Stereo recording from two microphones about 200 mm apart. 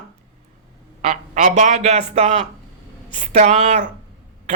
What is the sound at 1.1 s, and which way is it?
Speech, 40° right (ahead or behind).